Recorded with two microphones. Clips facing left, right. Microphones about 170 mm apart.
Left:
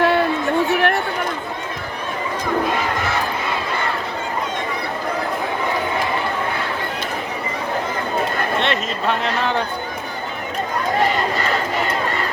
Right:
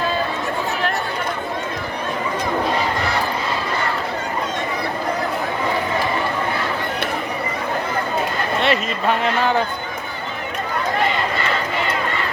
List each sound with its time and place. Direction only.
0.0 s chatter: 70° left (ahead or behind)
8.6 s speech: 5° right (ahead or behind)
11.3 s run: 40° left (ahead or behind)